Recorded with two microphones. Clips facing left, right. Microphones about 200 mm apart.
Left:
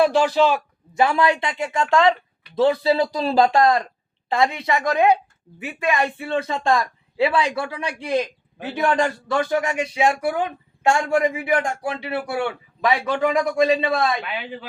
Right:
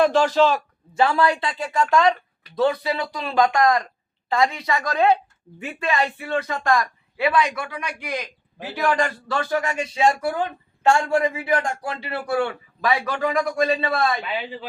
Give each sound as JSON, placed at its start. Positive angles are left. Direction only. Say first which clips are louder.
{"t": 0.0, "sound": "speech", "louder": "even", "side_deg": 10}
{"t": 6.0, "sound": "speech", "louder": "left 1 dB", "side_deg": 20}